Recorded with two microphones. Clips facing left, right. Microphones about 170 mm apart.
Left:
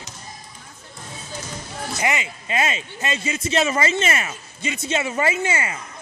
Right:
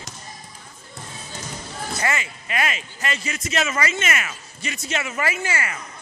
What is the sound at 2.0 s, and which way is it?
A man's voice, 20° left (ahead or behind).